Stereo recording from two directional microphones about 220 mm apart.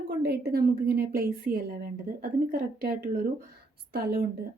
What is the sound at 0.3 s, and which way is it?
A woman's voice, 45° right (ahead or behind).